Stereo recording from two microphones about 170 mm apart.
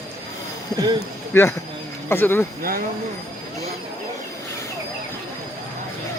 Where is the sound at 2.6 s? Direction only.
60° right (ahead or behind).